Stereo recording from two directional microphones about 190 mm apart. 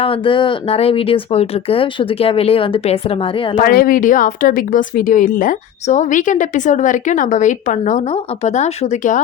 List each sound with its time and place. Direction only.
0.0 s speech: 30° left (ahead or behind)
3.6 s speech: 50° left (ahead or behind)